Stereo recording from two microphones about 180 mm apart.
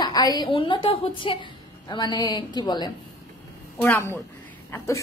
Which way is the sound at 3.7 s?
10° left (ahead or behind).